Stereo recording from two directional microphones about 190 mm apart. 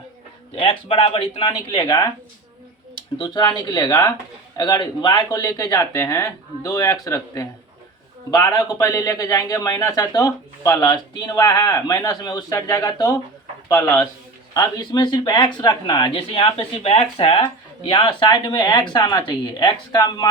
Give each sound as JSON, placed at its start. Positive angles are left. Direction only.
{"t": 0.5, "sound": "speech", "side_deg": 30}
{"t": 3.2, "sound": "a man's voice", "side_deg": 25}